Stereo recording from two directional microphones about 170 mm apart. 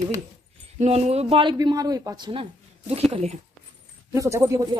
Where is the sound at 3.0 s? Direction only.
35° right (ahead or behind).